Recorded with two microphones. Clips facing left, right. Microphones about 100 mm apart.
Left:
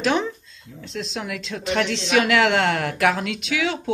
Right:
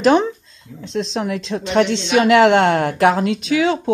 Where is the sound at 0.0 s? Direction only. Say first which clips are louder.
Right 8 dB; 40° right (ahead or behind).